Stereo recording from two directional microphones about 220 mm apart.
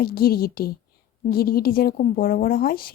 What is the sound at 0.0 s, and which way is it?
A woman's voice, 45° left (ahead or behind).